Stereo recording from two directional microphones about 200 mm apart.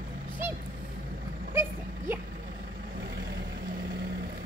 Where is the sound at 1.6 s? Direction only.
10° right (ahead or behind).